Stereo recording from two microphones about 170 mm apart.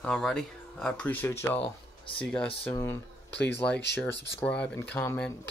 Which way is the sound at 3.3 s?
90° left.